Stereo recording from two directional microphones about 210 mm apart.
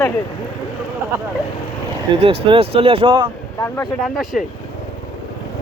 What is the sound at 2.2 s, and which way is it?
Speech, 25° right (ahead or behind).